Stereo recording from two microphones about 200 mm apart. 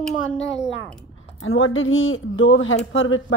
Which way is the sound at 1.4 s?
85° left.